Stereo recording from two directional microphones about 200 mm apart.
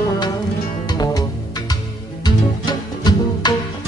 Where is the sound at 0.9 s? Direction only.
20° left (ahead or behind).